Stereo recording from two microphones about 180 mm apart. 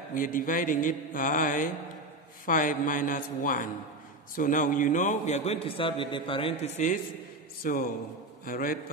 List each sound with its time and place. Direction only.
0.1 s a man's voice: 50° left (ahead or behind); by 6.7 s 30° left (ahead or behind)
7.6 s speech: 50° left (ahead or behind)